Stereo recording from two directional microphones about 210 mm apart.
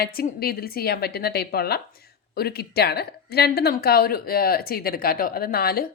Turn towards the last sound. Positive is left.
turn(degrees=45)  # may be behind; listen again after turning